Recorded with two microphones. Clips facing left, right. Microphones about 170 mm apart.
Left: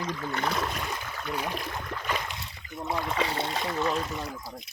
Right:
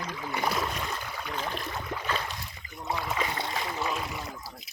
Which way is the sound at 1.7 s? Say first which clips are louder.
Right 1 dB; 5° right (ahead or behind).